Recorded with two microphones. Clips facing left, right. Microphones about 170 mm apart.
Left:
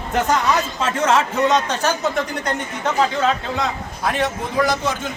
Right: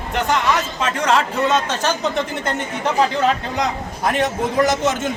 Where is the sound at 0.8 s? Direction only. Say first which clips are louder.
Even; 25° left (ahead or behind).